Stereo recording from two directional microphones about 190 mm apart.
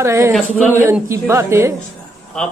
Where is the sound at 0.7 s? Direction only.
15° right (ahead or behind).